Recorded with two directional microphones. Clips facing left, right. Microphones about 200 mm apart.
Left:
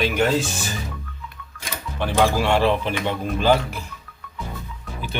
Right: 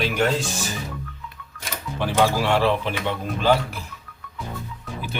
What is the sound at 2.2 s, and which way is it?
Speech, 5° right (ahead or behind).